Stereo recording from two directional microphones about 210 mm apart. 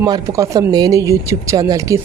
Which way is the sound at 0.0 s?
15° right (ahead or behind).